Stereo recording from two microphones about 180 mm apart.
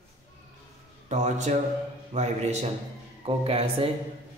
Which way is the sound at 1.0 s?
40° right (ahead or behind).